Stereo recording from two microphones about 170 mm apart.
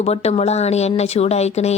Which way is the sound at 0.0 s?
40° left (ahead or behind).